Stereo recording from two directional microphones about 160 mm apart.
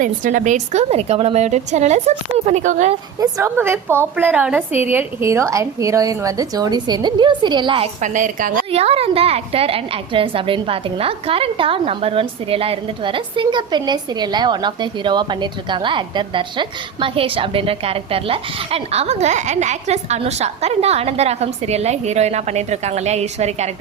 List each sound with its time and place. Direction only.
0.0 s a woman's voice: 55° right (ahead or behind)
3.2 s a woman's voice: 20° right (ahead or behind)
8.0 s a woman's voice: 50° right (ahead or behind)
8.7 s a woman's voice: 40° right (ahead or behind)